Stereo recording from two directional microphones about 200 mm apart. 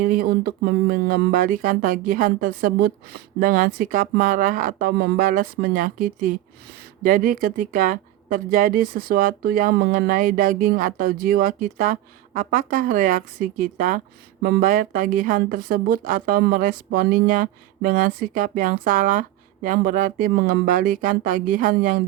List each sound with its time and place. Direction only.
0.0 s speech: 50° right (ahead or behind)